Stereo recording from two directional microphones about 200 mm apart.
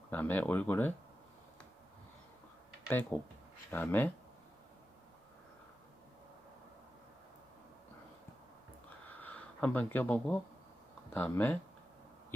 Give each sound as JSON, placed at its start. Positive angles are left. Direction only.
{"t": 0.1, "sound": "speech", "side_deg": 10}
{"t": 2.9, "sound": "speech", "side_deg": 10}
{"t": 9.0, "sound": "a sound", "side_deg": 5}
{"t": 11.1, "sound": "speech", "side_deg": 10}